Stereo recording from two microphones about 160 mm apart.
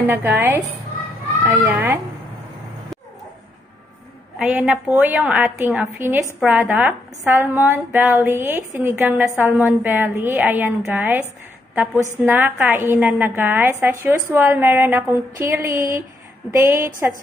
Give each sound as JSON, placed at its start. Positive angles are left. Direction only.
{"t": 0.0, "sound": "a woman's voice", "side_deg": -15}
{"t": 4.4, "sound": "a woman's voice", "side_deg": -10}